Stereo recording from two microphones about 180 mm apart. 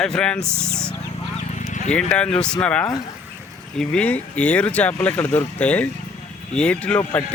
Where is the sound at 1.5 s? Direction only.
40° left (ahead or behind).